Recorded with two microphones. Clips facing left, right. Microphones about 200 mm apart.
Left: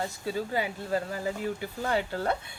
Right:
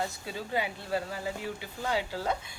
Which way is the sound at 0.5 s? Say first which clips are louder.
Right 2 dB; 40° left (ahead or behind).